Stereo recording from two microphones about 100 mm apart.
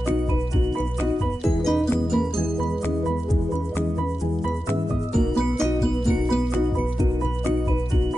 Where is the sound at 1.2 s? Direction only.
5° left (ahead or behind).